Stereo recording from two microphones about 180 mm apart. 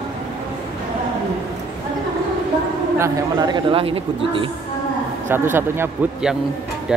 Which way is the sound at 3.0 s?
20° right (ahead or behind).